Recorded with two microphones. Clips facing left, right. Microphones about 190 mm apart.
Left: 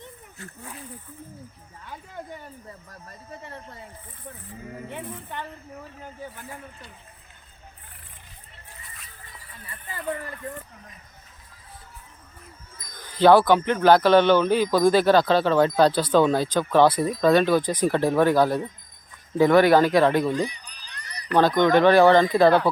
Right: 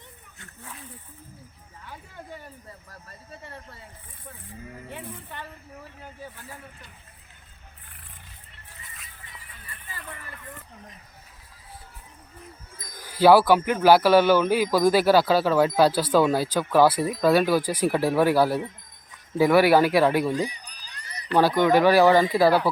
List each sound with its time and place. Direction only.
13.0 s speech: 5° right (ahead or behind)
20.5 s a sound: 35° right (ahead or behind)
21.3 s speech: 10° right (ahead or behind)